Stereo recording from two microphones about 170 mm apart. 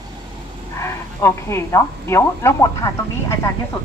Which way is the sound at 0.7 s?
15° left (ahead or behind).